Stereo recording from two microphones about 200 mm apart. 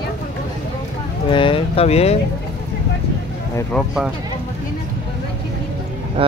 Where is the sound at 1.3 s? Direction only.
25° left (ahead or behind).